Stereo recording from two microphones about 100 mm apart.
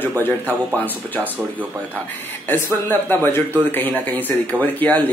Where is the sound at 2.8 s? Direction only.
20° left (ahead or behind).